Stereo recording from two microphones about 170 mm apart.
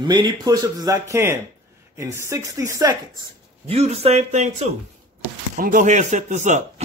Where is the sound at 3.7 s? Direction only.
35° right (ahead or behind).